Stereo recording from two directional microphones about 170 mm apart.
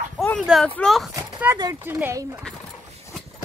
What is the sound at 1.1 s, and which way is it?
Speech, 15° right (ahead or behind).